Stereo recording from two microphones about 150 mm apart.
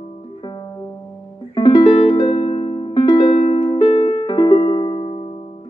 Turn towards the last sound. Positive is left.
turn(degrees=35)  # may be behind; listen again after turning